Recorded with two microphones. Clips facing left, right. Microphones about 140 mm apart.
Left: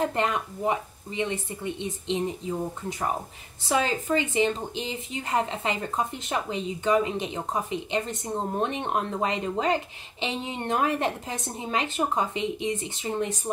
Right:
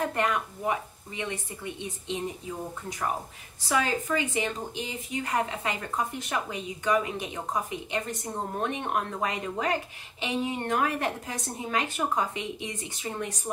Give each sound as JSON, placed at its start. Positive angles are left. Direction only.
{"t": 0.0, "sound": "a woman's voice", "side_deg": 25}
{"t": 3.6, "sound": "a woman's voice", "side_deg": 25}